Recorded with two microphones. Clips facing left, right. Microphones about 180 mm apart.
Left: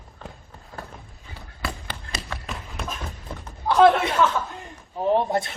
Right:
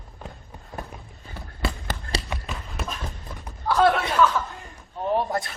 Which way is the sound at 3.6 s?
20° left (ahead or behind).